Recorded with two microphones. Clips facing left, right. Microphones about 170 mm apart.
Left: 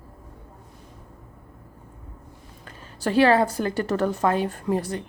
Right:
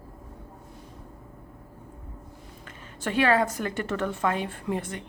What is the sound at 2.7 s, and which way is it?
Speech, 35° left (ahead or behind).